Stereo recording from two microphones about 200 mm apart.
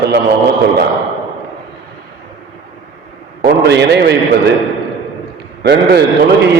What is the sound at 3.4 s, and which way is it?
Speech, 55° right (ahead or behind).